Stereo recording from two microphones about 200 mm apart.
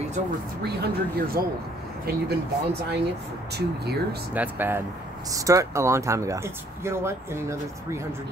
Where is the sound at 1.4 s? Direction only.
50° right (ahead or behind).